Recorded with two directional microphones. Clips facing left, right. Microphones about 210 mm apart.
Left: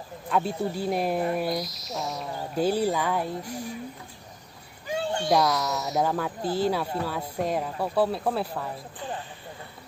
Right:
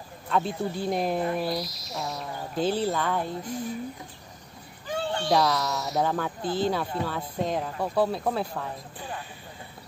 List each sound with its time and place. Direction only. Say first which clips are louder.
0.3 s a sound: left 1 dB; 5° left (ahead or behind)
4.8 s children playing: left 1 dB; 15° left (ahead or behind)
5.4 s speech: left 1 dB; centre (ahead or behind)